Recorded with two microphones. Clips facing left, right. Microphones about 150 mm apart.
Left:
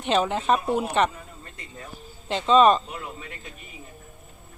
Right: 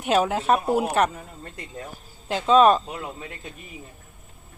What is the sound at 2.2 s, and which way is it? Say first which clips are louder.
Speech: right 1 dB; 5° right (ahead or behind).